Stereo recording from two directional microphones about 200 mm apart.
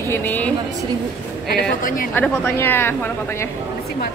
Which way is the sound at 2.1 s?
10° left (ahead or behind).